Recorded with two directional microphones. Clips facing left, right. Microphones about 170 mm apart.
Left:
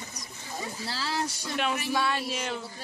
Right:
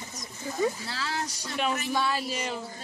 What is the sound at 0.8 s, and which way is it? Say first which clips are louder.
Speech: left 1 dB; 30° left (ahead or behind).